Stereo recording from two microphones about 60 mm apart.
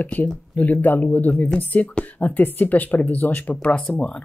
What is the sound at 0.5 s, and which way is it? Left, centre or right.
Speech, left.